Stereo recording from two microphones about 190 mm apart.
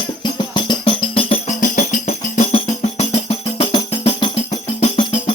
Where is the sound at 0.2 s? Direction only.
25° left (ahead or behind).